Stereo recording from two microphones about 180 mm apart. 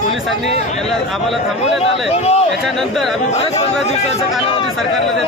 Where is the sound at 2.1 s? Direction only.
35° left (ahead or behind).